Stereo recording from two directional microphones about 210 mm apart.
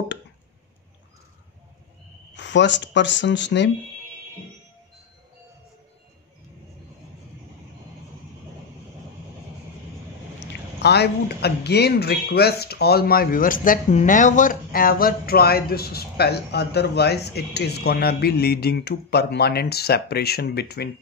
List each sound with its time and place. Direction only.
2.3 s speech: 60° left (ahead or behind)
10.4 s speech: 55° left (ahead or behind)